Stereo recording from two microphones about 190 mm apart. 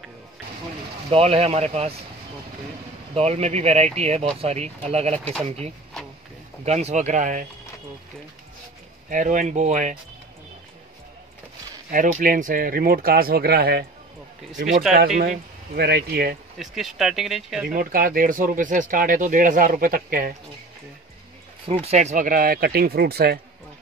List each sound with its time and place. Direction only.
1.1 s speech: 30° right (ahead or behind)
3.2 s speech: 35° right (ahead or behind)
6.6 s speech: 35° right (ahead or behind)
9.1 s speech: 40° right (ahead or behind)
11.9 s speech: 45° right (ahead or behind)
15.1 s speech: 50° right (ahead or behind)
16.5 s speech: centre (ahead or behind)
17.7 s speech: 45° right (ahead or behind)
21.6 s speech: 30° right (ahead or behind); by 23.4 s 55° right (ahead or behind)